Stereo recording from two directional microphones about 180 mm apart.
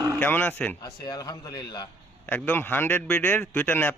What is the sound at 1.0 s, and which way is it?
Speech, 20° left (ahead or behind).